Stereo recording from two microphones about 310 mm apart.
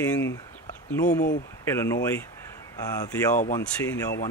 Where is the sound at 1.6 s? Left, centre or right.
Centre.